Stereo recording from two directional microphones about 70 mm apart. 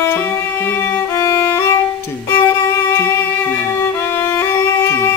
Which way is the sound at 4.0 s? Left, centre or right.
Left.